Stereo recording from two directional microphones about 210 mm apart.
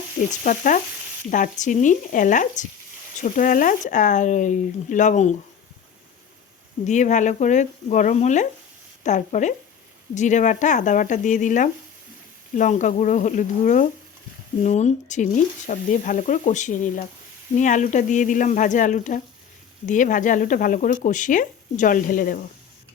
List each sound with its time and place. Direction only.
0.4 s speech: 40° left (ahead or behind)
6.8 s speech: 35° left (ahead or behind)